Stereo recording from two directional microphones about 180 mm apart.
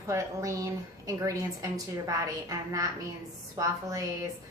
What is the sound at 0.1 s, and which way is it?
A woman's voice, 15° right (ahead or behind).